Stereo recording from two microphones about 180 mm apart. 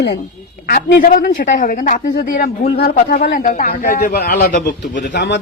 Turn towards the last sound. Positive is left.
turn(degrees=70)  # may be behind; listen again after turning